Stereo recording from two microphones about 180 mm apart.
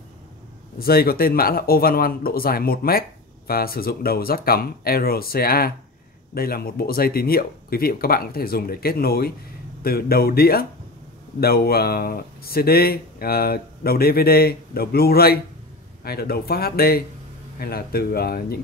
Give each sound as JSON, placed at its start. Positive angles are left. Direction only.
{"t": 0.7, "sound": "speech", "side_deg": 55}